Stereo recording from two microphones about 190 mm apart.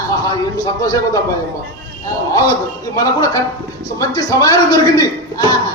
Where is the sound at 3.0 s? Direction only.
20° left (ahead or behind).